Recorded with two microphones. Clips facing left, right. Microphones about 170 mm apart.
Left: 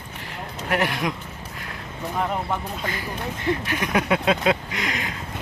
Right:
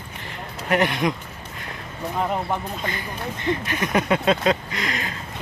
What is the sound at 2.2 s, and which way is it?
Speech, 10° right (ahead or behind).